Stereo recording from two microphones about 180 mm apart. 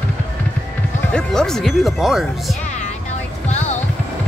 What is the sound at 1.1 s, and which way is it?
Speech, 5° left (ahead or behind).